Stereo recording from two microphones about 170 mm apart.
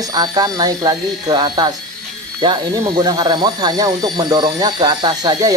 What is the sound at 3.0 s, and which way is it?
Speech, 25° right (ahead or behind).